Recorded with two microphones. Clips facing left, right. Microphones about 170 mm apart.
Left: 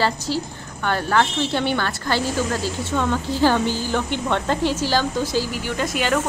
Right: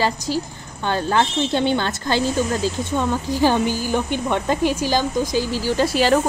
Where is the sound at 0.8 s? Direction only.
20° right (ahead or behind).